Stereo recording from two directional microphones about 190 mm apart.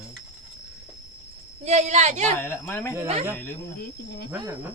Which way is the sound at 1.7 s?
35° right (ahead or behind).